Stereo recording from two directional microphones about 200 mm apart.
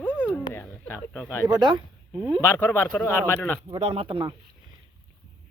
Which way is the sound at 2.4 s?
10° left (ahead or behind).